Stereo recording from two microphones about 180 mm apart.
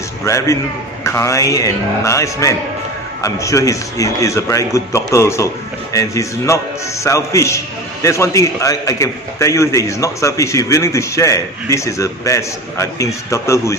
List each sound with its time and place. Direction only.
0.2 s a man's voice: 15° left (ahead or behind)